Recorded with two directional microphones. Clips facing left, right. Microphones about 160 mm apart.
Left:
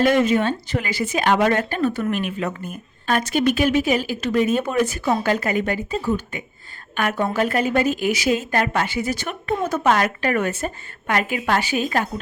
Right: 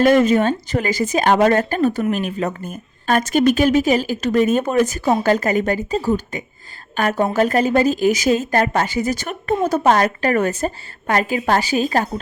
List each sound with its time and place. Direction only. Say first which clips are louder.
0.0 s a woman's voice: right 4 dB; 40° right (ahead or behind)